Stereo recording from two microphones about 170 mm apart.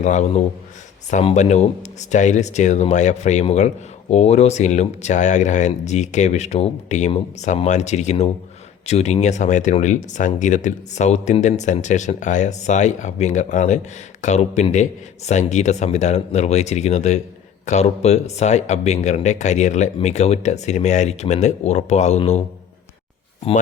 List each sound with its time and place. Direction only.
0.0 s speech: 45° left (ahead or behind)